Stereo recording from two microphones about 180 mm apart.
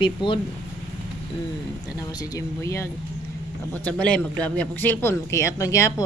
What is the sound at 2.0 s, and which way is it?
A man's voice, 20° left (ahead or behind).